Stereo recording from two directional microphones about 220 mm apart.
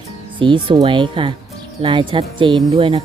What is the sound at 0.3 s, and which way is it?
Speech, 20° right (ahead or behind).